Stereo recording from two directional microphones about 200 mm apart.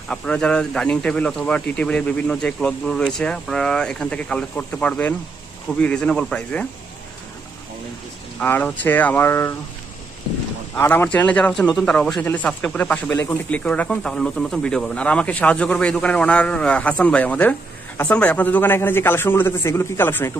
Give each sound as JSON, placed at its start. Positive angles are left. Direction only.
{"t": 0.1, "sound": "speech", "side_deg": 5}
{"t": 8.4, "sound": "speech", "side_deg": 5}
{"t": 10.7, "sound": "speech", "side_deg": 10}